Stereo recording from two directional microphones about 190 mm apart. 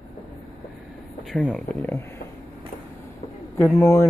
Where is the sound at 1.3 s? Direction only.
5° left (ahead or behind).